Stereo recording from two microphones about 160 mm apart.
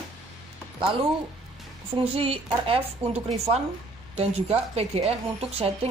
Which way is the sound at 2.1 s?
35° right (ahead or behind).